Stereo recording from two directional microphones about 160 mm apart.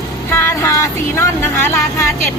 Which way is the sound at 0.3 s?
15° left (ahead or behind).